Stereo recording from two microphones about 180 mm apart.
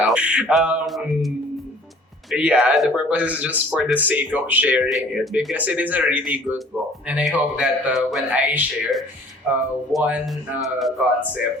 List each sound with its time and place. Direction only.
0.0 s a man's voice: 5° right (ahead or behind)
2.3 s a man's voice: 5° right (ahead or behind)